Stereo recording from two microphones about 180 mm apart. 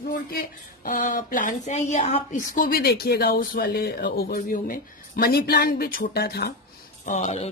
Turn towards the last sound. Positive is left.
turn(degrees=40)  # may be behind; listen again after turning